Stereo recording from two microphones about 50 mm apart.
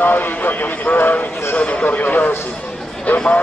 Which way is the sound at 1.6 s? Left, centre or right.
Left.